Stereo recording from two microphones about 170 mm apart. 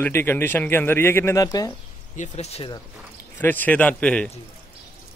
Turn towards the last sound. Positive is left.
turn(degrees=5)  # may be behind; listen again after turning